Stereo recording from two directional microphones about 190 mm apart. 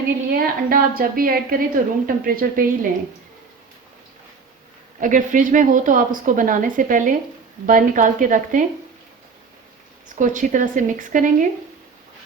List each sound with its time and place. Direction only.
0.3 s a woman's voice: 50° right (ahead or behind)
4.9 s a woman's voice: 45° right (ahead or behind)
10.2 s a woman's voice: 40° right (ahead or behind)